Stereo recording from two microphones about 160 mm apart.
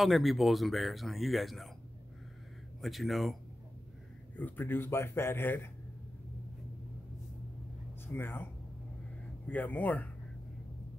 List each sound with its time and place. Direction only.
0.0 s speech: centre (ahead or behind)
2.8 s speech: centre (ahead or behind)
4.4 s speech: 10° left (ahead or behind)
8.1 s speech: 15° left (ahead or behind)
9.5 s speech: 10° left (ahead or behind)